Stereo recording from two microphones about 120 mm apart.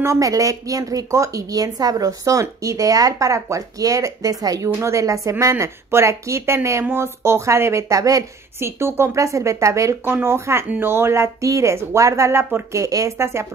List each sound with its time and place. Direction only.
0.0 s a woman's voice: 25° right (ahead or behind)